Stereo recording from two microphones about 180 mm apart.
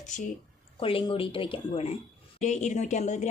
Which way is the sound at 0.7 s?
30° left (ahead or behind).